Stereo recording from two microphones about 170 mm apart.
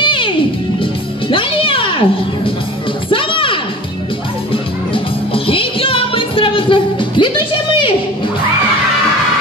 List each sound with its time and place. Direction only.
0.0 s music: 30° left (ahead or behind)
1.3 s music: 30° left (ahead or behind)